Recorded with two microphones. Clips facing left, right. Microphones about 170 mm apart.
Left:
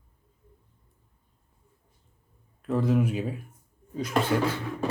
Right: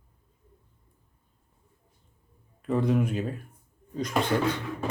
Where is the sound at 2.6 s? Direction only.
Centre (ahead or behind).